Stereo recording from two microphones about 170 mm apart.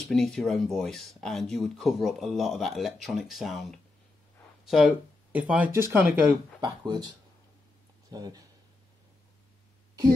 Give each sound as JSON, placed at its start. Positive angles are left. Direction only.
{"t": 0.1, "sound": "speech", "side_deg": 0}
{"t": 6.6, "sound": "speech", "side_deg": -25}